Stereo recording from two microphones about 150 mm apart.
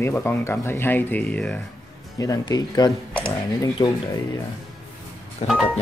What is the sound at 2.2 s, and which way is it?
Speech, 25° left (ahead or behind).